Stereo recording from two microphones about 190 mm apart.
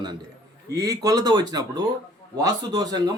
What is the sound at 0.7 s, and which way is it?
Speech, 20° right (ahead or behind).